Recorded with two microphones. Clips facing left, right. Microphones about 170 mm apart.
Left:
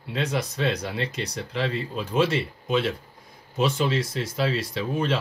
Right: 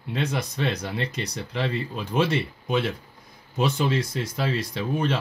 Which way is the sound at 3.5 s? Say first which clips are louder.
Even; centre (ahead or behind).